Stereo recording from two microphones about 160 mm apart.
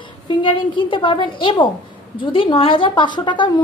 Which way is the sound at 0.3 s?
30° left (ahead or behind).